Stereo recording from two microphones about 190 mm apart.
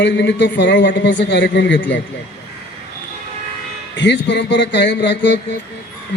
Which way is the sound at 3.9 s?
65° left (ahead or behind).